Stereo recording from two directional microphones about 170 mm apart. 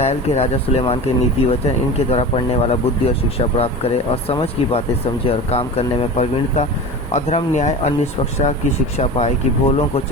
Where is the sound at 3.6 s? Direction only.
35° left (ahead or behind).